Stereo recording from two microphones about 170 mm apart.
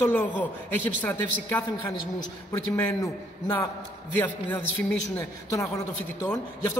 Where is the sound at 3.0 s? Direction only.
20° left (ahead or behind).